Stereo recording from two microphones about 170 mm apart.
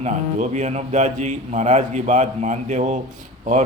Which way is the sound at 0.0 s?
45° right (ahead or behind).